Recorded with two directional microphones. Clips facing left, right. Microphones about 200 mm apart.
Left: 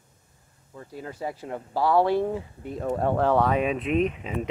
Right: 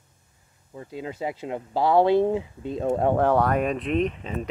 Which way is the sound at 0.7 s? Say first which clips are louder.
Right 4 dB; 20° right (ahead or behind).